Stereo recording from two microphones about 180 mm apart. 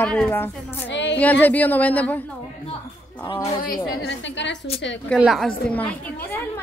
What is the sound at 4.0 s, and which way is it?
Speech, 80° left.